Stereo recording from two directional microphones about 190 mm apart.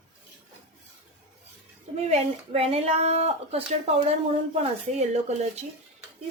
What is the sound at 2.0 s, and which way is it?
Speech, 35° right (ahead or behind).